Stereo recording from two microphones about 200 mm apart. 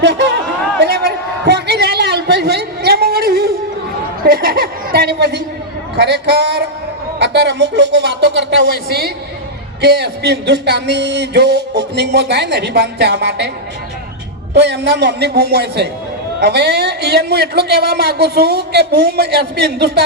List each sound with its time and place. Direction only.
0.0 s speech: 60° right (ahead or behind)
0.8 s a sound: 55° right (ahead or behind)
4.2 s chuckle: 50° right (ahead or behind)
7.2 s speech: 60° right (ahead or behind)
14.5 s a woman's voice: 55° right (ahead or behind)